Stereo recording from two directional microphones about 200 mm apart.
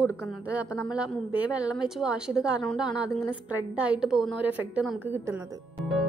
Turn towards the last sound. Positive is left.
turn(degrees=0)  # may be behind; listen again after turning